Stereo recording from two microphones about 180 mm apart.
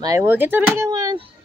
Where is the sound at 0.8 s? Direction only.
20° right (ahead or behind).